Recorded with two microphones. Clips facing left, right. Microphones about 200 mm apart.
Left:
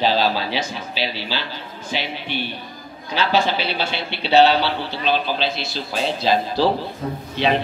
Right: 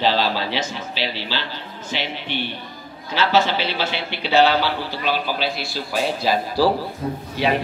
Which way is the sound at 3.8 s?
15° right (ahead or behind).